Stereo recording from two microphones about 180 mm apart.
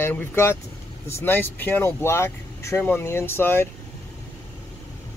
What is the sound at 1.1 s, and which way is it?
Speech, 10° left (ahead or behind).